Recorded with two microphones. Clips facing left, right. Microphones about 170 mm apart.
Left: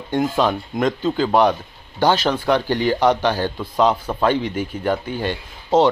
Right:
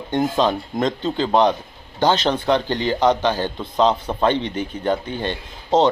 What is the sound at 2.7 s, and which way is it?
Speech, 10° left (ahead or behind).